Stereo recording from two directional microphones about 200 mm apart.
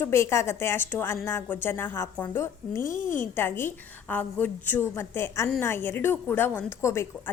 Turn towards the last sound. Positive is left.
turn(degrees=10)  # may be behind; listen again after turning